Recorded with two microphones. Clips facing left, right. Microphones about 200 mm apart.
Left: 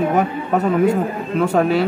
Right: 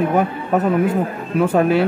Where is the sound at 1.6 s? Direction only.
5° right (ahead or behind).